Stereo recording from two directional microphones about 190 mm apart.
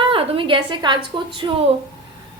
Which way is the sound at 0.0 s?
25° right (ahead or behind).